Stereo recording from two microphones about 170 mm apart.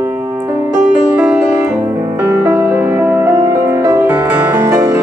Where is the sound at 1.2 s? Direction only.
10° right (ahead or behind).